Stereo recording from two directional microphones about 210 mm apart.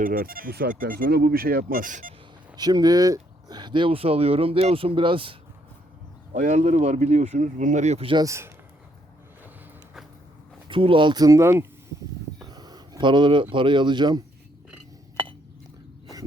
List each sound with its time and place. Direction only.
0.0 s speech: 40° right (ahead or behind)
2.6 s speech: 20° right (ahead or behind)
6.3 s speech: 35° right (ahead or behind); by 8.5 s 15° right (ahead or behind)
10.7 s speech: 25° right (ahead or behind)